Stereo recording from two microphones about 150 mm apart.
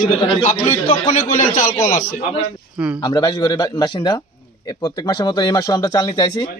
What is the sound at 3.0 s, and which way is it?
A man's voice, 25° left (ahead or behind).